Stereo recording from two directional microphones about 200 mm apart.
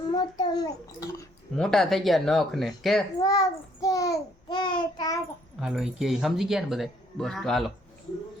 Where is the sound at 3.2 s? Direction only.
15° left (ahead or behind).